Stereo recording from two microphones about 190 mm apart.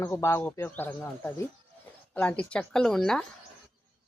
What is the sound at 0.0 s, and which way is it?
A woman's voice, 15° left (ahead or behind).